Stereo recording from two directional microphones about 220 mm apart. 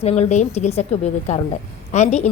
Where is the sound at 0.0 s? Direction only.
30° left (ahead or behind).